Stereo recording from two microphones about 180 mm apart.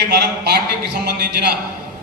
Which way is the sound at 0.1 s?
65° right (ahead or behind).